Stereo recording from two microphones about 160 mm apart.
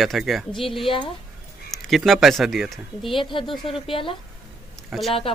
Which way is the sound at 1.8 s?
Centre (ahead or behind).